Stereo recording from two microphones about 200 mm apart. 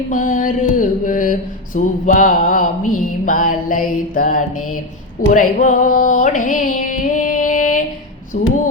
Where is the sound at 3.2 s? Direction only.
40° left (ahead or behind).